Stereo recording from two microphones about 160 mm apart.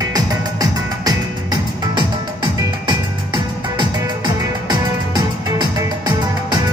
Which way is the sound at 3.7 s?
25° right (ahead or behind).